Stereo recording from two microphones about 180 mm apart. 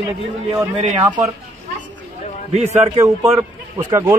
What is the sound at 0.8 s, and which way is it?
Speech, 35° right (ahead or behind).